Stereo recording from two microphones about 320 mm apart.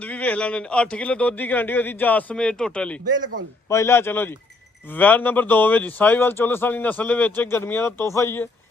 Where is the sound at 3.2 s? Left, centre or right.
Right.